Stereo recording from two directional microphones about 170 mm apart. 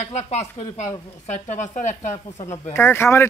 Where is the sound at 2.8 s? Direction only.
15° left (ahead or behind).